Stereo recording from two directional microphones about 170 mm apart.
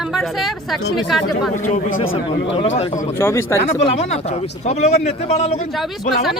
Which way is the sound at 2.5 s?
35° left (ahead or behind).